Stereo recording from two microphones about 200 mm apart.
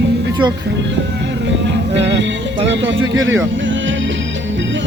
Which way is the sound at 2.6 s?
65° right (ahead or behind).